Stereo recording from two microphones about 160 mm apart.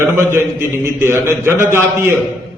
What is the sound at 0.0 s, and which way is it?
A man's voice, 15° right (ahead or behind).